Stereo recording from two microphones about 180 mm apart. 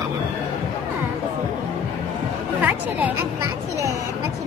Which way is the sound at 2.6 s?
10° right (ahead or behind).